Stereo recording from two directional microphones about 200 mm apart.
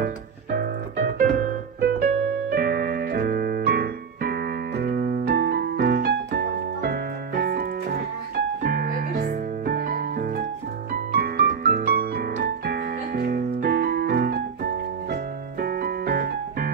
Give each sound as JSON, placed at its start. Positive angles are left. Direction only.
{"t": 0.0, "sound": "music", "side_deg": -45}
{"t": 10.9, "sound": "keyboard", "side_deg": -50}
{"t": 15.6, "sound": "piano", "side_deg": -50}